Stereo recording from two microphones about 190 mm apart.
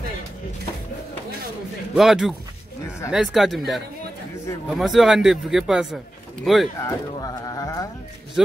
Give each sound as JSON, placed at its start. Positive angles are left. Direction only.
{"t": 2.0, "sound": "a man's voice", "side_deg": 0}
{"t": 6.8, "sound": "speech", "side_deg": 20}